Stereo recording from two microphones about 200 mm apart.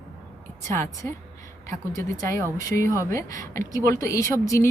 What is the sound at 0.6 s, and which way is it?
Speech, 15° left (ahead or behind).